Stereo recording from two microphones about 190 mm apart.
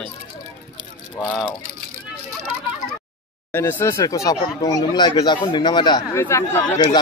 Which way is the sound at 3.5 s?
10° left (ahead or behind).